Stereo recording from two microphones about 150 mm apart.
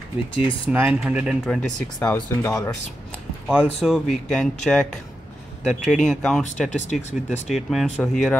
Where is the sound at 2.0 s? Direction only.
10° left (ahead or behind).